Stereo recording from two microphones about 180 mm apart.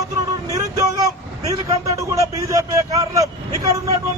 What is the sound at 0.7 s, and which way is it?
Vehicle, 20° right (ahead or behind).